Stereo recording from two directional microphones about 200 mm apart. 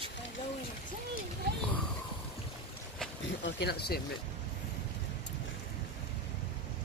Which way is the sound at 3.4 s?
55° left (ahead or behind).